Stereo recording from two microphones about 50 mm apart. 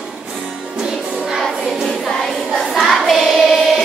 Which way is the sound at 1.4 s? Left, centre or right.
Centre.